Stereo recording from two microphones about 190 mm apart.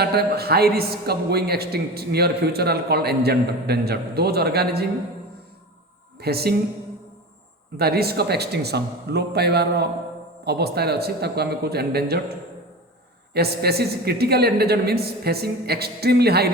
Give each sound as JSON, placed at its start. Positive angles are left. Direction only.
{"t": 0.0, "sound": "a woman's voice", "side_deg": -55}
{"t": 6.1, "sound": "a woman's voice", "side_deg": -55}
{"t": 7.8, "sound": "a woman's voice", "side_deg": -55}
{"t": 13.3, "sound": "a woman's voice", "side_deg": -55}